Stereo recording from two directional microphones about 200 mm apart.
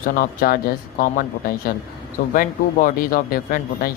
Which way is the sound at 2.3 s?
45° left (ahead or behind).